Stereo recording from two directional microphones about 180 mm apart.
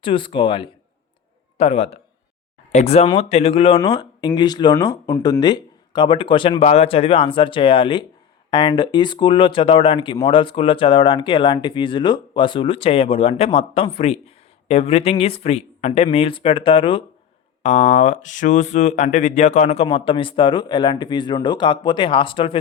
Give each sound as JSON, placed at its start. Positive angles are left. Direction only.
{"t": 0.0, "sound": "speech", "side_deg": 30}
{"t": 3.8, "sound": "speech", "side_deg": 20}
{"t": 17.6, "sound": "speech", "side_deg": 40}